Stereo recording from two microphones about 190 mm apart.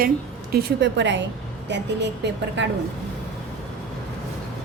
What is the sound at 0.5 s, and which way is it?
Speech, 60° right (ahead or behind).